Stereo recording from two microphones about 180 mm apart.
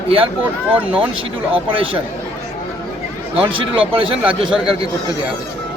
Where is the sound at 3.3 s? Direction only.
30° right (ahead or behind).